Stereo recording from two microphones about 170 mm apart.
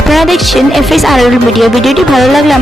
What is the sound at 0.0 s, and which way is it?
Speech, centre (ahead or behind).